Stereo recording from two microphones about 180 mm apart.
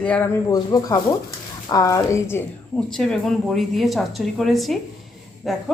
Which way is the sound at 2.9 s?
5° left (ahead or behind).